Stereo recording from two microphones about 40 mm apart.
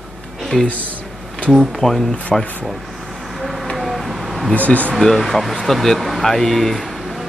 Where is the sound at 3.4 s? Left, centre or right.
Centre.